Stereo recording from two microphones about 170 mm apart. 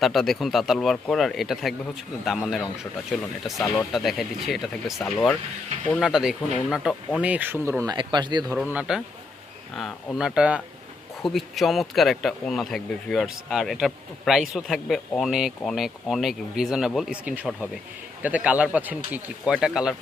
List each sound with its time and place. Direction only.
0.0 s speech: centre (ahead or behind); by 8.5 s 25° right (ahead or behind)
8.7 s speech: 10° right (ahead or behind)